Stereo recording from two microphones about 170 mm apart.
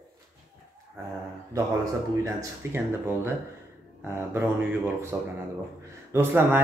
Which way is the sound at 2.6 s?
15° right (ahead or behind).